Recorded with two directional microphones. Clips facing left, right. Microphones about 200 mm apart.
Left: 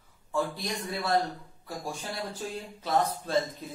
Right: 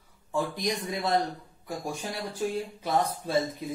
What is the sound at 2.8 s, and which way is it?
Speech, 10° right (ahead or behind).